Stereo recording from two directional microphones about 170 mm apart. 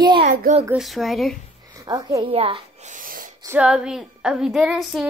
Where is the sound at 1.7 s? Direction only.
20° right (ahead or behind).